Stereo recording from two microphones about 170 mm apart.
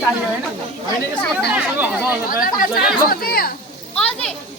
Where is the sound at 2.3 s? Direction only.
55° left (ahead or behind).